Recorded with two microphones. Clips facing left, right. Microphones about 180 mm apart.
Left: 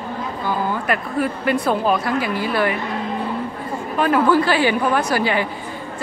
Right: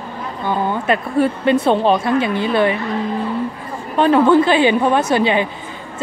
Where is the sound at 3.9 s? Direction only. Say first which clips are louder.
Right 5 dB; 25° right (ahead or behind).